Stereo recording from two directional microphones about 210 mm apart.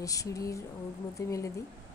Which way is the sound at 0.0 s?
15° left (ahead or behind).